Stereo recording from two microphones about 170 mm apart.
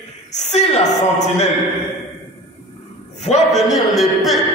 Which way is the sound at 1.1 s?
40° left (ahead or behind).